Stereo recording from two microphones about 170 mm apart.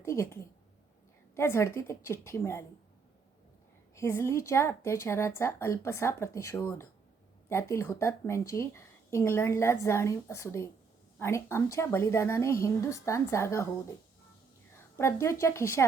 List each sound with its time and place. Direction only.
0.0 s a woman's voice: 15° left (ahead or behind)
3.9 s speech: 15° left (ahead or behind)
14.9 s speech: 15° left (ahead or behind)